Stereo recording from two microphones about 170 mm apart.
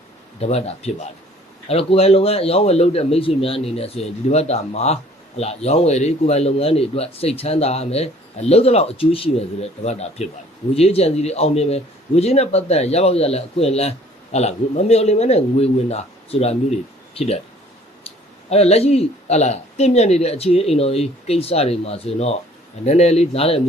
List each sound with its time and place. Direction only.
0.3 s a man's voice: 40° left (ahead or behind)